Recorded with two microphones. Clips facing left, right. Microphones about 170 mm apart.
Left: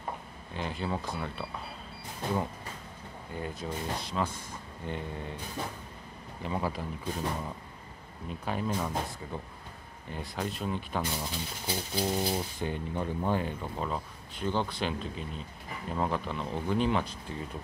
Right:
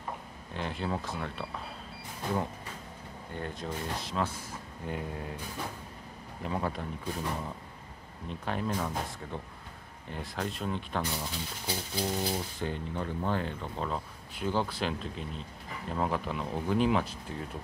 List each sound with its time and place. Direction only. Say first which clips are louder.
0.6 s speech: even; centre (ahead or behind)
3.3 s speech: left 1 dB; 5° left (ahead or behind)
6.4 s speech: even; centre (ahead or behind)
8.3 s speech: even; 5° left (ahead or behind)